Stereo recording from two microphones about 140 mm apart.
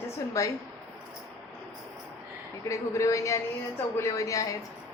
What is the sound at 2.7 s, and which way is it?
A woman's voice, 20° left (ahead or behind).